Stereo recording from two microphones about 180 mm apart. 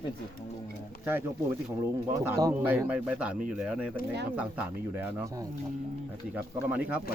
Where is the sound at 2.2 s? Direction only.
15° right (ahead or behind).